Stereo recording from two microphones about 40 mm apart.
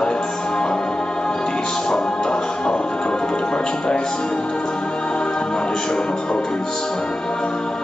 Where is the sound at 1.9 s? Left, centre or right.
Left.